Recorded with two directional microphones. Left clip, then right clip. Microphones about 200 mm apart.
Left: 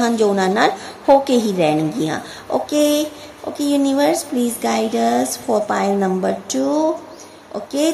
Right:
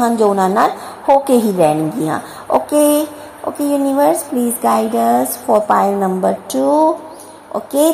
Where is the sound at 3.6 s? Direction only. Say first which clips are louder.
Right 3 dB; 5° left (ahead or behind).